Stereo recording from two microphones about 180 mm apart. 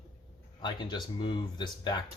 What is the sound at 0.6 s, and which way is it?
Speech, 25° left (ahead or behind).